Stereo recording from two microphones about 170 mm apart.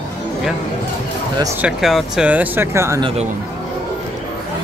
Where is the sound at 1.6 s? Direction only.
5° right (ahead or behind).